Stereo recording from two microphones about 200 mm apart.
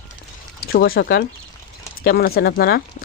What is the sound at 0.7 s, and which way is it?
Speech, 50° left (ahead or behind).